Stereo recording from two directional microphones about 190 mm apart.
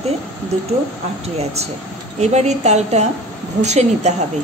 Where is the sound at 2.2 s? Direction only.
35° right (ahead or behind).